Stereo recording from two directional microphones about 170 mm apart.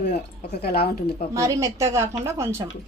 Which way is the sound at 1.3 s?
20° right (ahead or behind).